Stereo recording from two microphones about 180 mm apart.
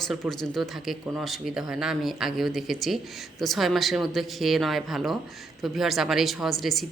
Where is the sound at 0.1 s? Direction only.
Centre (ahead or behind).